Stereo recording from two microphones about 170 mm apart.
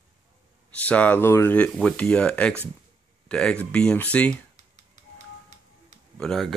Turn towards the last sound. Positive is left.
turn(degrees=0)  # may be behind; listen again after turning